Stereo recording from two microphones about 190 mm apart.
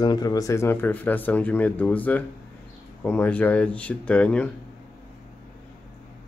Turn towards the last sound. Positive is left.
turn(degrees=5)  # may be behind; listen again after turning